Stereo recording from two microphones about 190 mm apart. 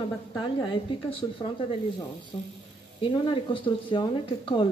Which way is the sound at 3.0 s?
25° left (ahead or behind).